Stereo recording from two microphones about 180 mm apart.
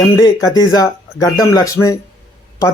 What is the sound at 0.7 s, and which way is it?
Speech, 20° left (ahead or behind).